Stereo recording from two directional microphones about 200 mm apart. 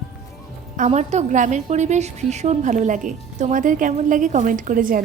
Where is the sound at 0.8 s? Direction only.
35° right (ahead or behind).